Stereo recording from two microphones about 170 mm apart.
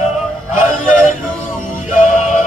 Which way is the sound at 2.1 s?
45° left (ahead or behind).